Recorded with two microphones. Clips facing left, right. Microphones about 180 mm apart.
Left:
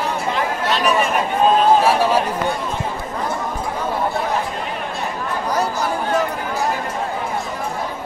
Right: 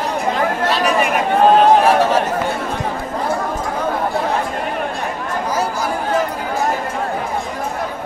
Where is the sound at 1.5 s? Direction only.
70° right (ahead or behind).